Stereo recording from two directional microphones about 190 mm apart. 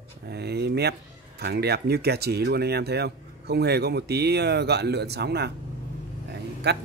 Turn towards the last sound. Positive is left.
turn(degrees=-60)  # may be behind; listen again after turning